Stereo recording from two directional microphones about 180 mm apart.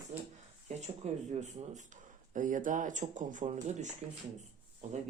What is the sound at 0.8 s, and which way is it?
Speech, 40° right (ahead or behind).